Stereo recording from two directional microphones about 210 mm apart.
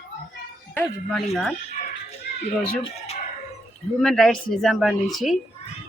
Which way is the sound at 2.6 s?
25° left (ahead or behind).